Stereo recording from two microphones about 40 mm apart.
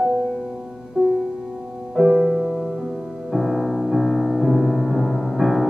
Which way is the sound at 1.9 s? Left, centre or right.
Centre.